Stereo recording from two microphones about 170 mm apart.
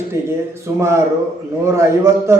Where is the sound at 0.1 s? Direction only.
15° right (ahead or behind).